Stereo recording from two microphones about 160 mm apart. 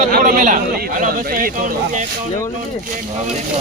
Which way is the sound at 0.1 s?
55° right (ahead or behind).